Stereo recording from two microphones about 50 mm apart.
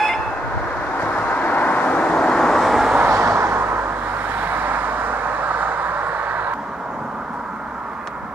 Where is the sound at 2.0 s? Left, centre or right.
Centre.